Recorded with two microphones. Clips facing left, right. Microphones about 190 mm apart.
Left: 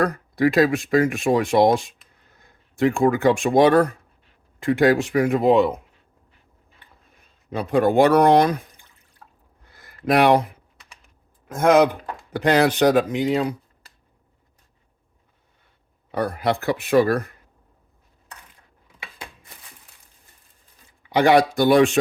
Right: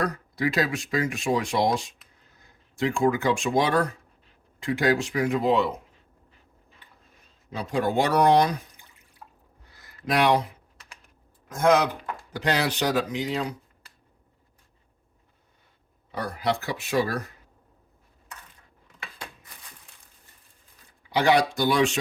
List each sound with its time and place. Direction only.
0.0 s speech: 55° left (ahead or behind)
7.5 s speech: 55° left (ahead or behind)
9.7 s a sound: 55° left (ahead or behind)
11.4 s speech: 55° left (ahead or behind)
16.1 s speech: 55° left (ahead or behind)
21.1 s speech: 55° left (ahead or behind)